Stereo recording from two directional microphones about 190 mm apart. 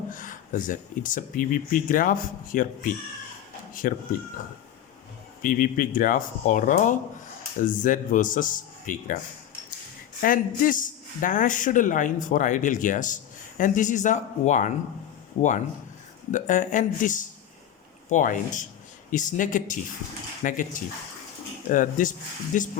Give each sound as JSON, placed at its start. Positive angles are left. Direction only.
{"t": 0.1, "sound": "speech", "side_deg": 45}
{"t": 5.4, "sound": "speech", "side_deg": 45}
{"t": 10.2, "sound": "speech", "side_deg": 45}